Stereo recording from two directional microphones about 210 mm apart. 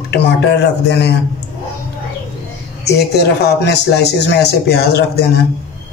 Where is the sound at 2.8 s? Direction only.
50° left (ahead or behind).